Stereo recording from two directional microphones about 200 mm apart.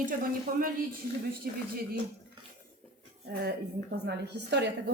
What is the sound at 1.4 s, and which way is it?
Speech, 50° right (ahead or behind).